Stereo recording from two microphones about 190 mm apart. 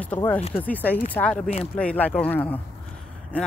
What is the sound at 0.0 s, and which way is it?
Speech, 10° left (ahead or behind).